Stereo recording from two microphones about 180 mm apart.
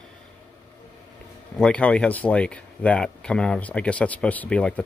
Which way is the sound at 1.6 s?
5° left (ahead or behind).